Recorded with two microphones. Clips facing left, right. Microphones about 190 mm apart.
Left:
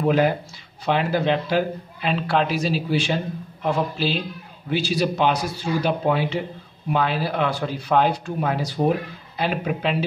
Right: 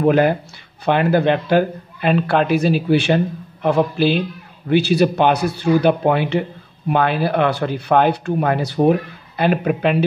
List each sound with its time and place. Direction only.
0.0 s a man's voice: 60° right (ahead or behind)